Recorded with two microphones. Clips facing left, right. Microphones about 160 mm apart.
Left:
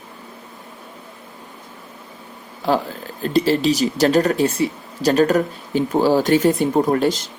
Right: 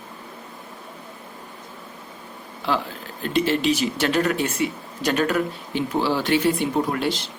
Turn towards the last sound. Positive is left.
turn(degrees=45)  # may be behind; listen again after turning